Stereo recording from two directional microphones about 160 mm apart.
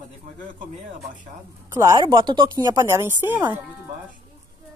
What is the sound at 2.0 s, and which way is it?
Speech, 30° right (ahead or behind).